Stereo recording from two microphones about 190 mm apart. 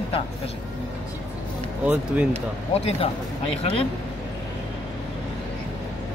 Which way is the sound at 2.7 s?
30° left (ahead or behind).